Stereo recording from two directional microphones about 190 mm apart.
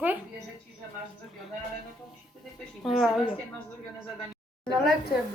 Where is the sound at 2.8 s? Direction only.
Centre (ahead or behind).